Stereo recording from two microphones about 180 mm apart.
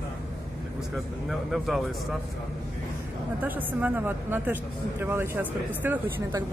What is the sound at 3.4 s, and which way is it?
A woman's voice, 10° right (ahead or behind).